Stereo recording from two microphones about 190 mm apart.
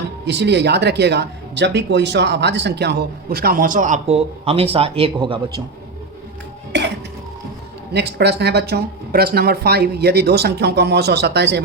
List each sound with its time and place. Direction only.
0.3 s speech: 65° right (ahead or behind); by 5.6 s 25° right (ahead or behind)
6.7 s music: 65° right (ahead or behind)
7.9 s speech: 60° right (ahead or behind)